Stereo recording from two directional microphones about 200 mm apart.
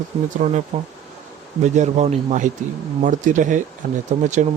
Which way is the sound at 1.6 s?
35° right (ahead or behind).